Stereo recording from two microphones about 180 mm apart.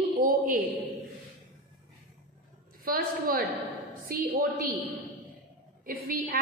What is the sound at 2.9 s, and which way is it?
A woman's voice, 55° right (ahead or behind).